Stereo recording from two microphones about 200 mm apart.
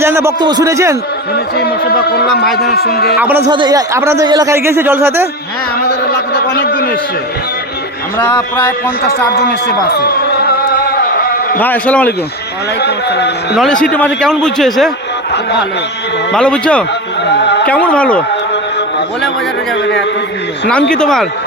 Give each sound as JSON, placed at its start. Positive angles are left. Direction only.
{"t": 0.0, "sound": "speech", "side_deg": -15}
{"t": 1.5, "sound": "speech", "side_deg": 50}
{"t": 3.2, "sound": "speech", "side_deg": -10}
{"t": 3.4, "sound": "speech", "side_deg": -25}
{"t": 5.9, "sound": "a sound", "side_deg": 50}
{"t": 9.0, "sound": "speech", "side_deg": 50}
{"t": 11.6, "sound": "speech", "side_deg": 10}
{"t": 12.8, "sound": "a man's voice", "side_deg": 55}
{"t": 13.8, "sound": "a man's voice", "side_deg": 5}
{"t": 16.3, "sound": "a man's voice", "side_deg": 5}
{"t": 17.3, "sound": "speech", "side_deg": 60}
{"t": 17.7, "sound": "speech", "side_deg": 5}
{"t": 20.9, "sound": "a man's voice", "side_deg": 5}